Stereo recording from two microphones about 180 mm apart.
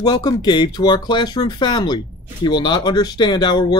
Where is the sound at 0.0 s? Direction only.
20° left (ahead or behind).